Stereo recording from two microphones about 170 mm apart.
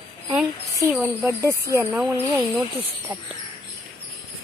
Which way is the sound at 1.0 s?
10° right (ahead or behind).